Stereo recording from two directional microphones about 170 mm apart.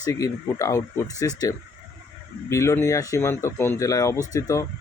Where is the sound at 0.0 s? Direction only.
20° left (ahead or behind).